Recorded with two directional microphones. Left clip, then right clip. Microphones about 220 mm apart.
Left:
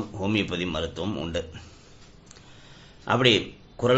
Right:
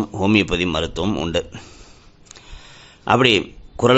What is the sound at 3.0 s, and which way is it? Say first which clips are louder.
Speech: right 6 dB; 50° right (ahead or behind).